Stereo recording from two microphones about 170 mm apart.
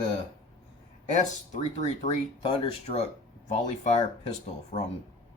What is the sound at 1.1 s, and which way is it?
Speech, 45° left (ahead or behind).